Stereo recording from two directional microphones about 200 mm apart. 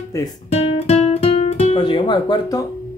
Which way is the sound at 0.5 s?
30° left (ahead or behind).